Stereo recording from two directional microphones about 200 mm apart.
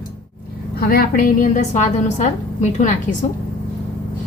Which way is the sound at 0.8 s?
50° left (ahead or behind).